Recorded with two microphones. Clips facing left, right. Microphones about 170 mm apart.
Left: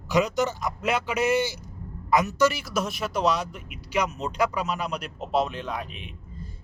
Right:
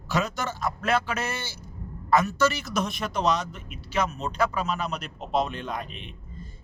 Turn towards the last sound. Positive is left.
turn(degrees=5)  # may be behind; listen again after turning